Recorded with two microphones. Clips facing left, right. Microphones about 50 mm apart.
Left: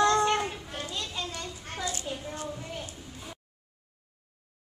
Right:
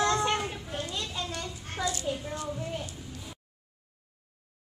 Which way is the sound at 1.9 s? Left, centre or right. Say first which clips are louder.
Right 3 dB; left.